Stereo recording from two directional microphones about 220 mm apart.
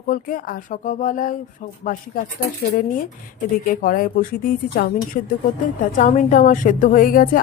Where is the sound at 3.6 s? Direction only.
40° left (ahead or behind).